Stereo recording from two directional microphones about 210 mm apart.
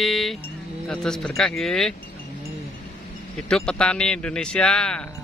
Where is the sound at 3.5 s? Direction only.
5° left (ahead or behind).